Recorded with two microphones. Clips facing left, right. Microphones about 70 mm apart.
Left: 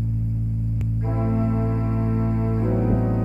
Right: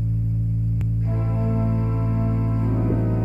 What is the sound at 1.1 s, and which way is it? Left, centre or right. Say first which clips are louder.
Music: left 4 dB; left.